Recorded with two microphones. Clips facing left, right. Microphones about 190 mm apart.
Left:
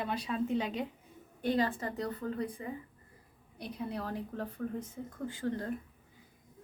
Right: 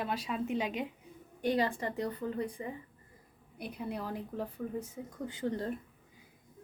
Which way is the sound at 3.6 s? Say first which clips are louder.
Even; 10° right (ahead or behind).